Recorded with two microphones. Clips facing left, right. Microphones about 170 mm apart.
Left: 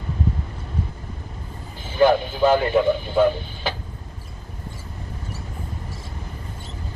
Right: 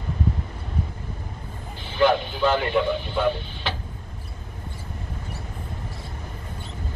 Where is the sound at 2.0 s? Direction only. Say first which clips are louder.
Left 3 dB; 40° left (ahead or behind).